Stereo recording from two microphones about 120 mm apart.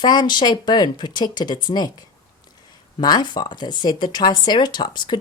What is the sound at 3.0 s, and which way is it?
A woman's voice, 35° left (ahead or behind).